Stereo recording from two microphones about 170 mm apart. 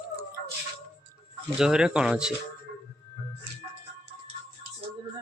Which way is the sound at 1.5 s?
5° right (ahead or behind).